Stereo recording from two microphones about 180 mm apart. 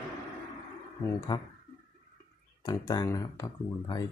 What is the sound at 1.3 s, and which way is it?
Speech, 25° left (ahead or behind).